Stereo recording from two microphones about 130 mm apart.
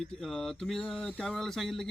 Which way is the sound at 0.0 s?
Centre (ahead or behind).